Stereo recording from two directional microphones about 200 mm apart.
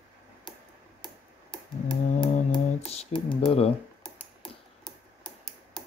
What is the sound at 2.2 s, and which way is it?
Music, 35° left (ahead or behind).